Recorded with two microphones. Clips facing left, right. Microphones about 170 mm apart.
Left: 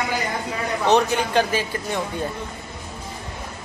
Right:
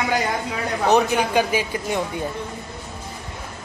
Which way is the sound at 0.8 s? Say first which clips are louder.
Right 1 dB; 10° right (ahead or behind).